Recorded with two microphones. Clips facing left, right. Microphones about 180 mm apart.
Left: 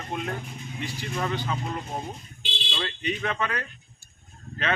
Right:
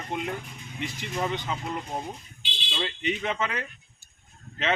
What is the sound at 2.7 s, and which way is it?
Speech, 15° right (ahead or behind).